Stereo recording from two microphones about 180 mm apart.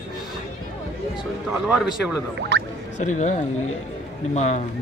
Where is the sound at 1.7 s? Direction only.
10° right (ahead or behind).